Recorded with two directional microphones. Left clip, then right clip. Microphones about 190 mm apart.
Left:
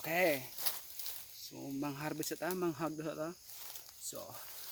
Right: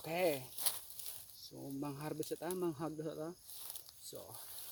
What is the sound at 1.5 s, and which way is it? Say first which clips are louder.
Speech: left 4 dB; 25° left (ahead or behind).